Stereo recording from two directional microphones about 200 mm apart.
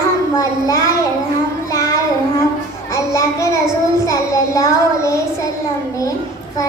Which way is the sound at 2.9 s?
15° left (ahead or behind).